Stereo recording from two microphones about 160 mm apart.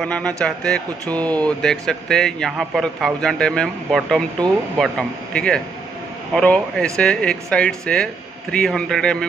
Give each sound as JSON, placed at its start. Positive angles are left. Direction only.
{"t": 0.0, "sound": "a man's voice", "side_deg": 5}